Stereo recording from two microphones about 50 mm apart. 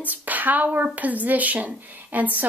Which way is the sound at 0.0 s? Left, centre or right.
Right.